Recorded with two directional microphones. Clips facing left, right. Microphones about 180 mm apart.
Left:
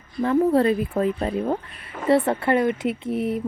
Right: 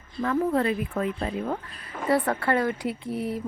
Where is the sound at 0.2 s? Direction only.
25° left (ahead or behind).